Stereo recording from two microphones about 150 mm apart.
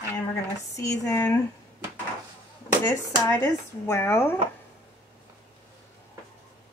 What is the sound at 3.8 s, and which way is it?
Speech, 15° left (ahead or behind).